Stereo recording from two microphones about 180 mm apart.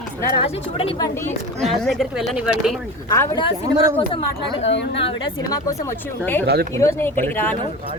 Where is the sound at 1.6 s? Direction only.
Centre (ahead or behind).